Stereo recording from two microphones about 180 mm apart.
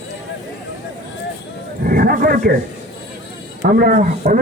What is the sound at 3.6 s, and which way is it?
Speech, 50° right (ahead or behind).